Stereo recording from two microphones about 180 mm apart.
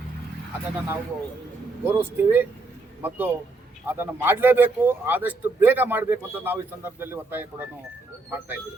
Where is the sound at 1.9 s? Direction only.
10° right (ahead or behind).